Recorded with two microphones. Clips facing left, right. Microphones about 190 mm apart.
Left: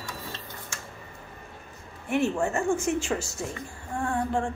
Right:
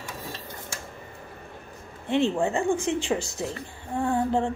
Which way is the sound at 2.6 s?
35° right (ahead or behind).